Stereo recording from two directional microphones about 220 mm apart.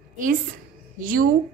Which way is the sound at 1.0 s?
40° right (ahead or behind).